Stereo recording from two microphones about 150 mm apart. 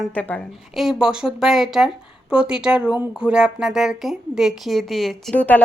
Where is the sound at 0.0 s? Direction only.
10° left (ahead or behind).